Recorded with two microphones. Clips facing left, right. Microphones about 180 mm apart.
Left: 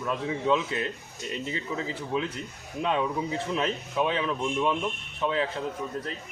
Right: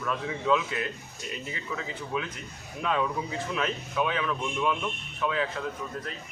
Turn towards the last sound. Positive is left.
turn(degrees=25)  # may be behind; listen again after turning